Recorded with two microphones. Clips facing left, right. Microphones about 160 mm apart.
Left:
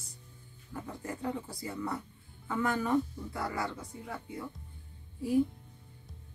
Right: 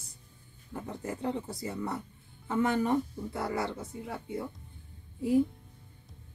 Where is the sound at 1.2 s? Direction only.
20° right (ahead or behind).